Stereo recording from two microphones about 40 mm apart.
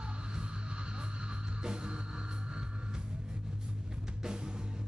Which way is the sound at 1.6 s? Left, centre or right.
Right.